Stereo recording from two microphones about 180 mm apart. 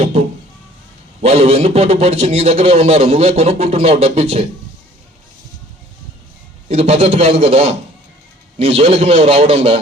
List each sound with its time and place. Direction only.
0.0 s a sound: 35° right (ahead or behind)
1.2 s a man's voice: 35° right (ahead or behind)
6.7 s a man's voice: 35° right (ahead or behind)